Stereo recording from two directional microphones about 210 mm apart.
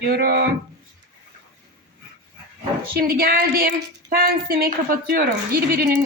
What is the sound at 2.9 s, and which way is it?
Speech, 45° right (ahead or behind).